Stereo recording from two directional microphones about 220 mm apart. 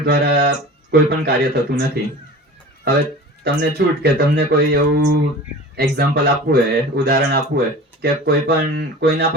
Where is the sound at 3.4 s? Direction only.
45° right (ahead or behind).